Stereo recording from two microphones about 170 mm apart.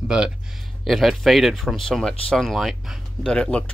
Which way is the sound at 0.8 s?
Centre (ahead or behind).